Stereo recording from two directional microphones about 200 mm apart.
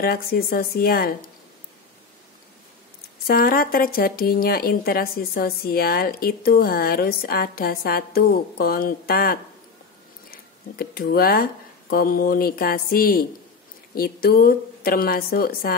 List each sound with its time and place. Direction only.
0.0 s speech: 50° left (ahead or behind)
3.3 s speech: 45° left (ahead or behind)